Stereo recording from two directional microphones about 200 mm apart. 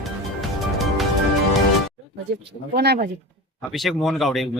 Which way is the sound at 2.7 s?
55° right (ahead or behind).